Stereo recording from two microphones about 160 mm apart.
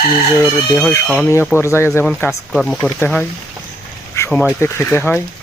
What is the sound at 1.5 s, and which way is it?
Speech, 15° left (ahead or behind).